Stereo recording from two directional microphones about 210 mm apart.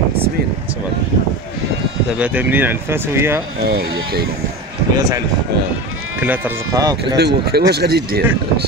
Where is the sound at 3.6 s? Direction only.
50° right (ahead or behind).